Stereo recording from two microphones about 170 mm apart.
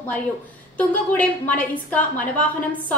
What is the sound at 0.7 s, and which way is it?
A woman's voice, 10° left (ahead or behind).